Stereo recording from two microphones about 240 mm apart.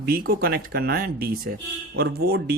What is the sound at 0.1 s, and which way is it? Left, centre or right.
Speech, right.